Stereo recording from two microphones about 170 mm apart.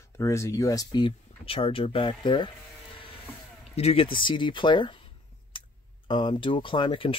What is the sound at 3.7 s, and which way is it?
Speech, 35° left (ahead or behind).